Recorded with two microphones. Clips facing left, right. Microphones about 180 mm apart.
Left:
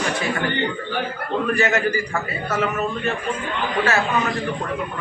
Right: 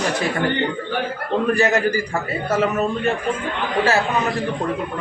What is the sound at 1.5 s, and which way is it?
Speech, 40° right (ahead or behind).